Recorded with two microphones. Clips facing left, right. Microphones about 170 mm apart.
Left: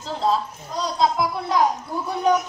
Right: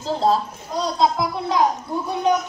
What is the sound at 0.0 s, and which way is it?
Speech, 35° right (ahead or behind).